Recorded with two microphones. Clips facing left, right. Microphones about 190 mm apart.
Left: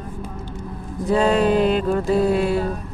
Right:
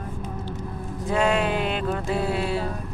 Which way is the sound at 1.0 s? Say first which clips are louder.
Left 5 dB; 35° left (ahead or behind).